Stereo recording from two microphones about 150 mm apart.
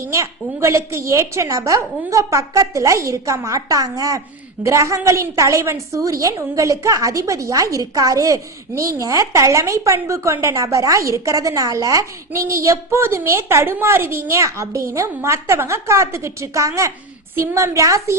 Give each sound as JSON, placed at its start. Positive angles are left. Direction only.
{"t": 0.0, "sound": "a woman's voice", "side_deg": -20}